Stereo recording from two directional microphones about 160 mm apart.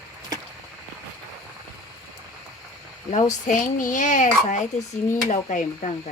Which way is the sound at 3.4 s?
55° left (ahead or behind).